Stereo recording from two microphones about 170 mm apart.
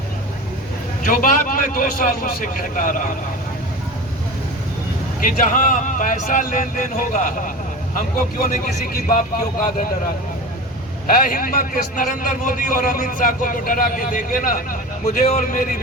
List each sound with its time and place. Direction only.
1.0 s a man's voice: 55° left (ahead or behind)
5.5 s a man's voice: 50° left (ahead or behind)
11.0 s a man's voice: 55° left (ahead or behind)